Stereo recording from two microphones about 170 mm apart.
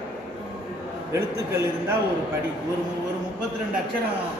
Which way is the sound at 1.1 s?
15° right (ahead or behind).